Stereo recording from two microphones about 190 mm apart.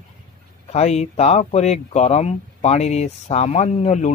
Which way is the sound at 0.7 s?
35° left (ahead or behind).